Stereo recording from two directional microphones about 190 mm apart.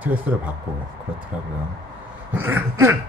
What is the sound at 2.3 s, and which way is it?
Speech, 10° right (ahead or behind).